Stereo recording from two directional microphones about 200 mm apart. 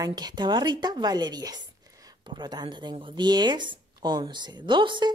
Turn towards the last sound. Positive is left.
turn(degrees=-25)  # may be behind; listen again after turning